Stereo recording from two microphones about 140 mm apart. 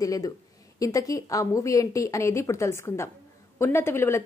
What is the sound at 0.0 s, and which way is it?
A woman's voice, 25° left (ahead or behind).